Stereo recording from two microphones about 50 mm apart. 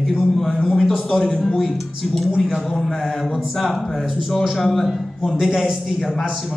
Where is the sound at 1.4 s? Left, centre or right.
Centre.